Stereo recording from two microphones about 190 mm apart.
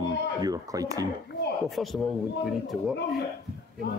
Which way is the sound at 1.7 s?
Centre (ahead or behind).